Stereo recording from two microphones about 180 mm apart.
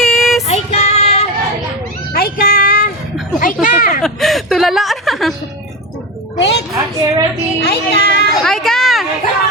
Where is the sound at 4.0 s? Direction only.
Centre (ahead or behind).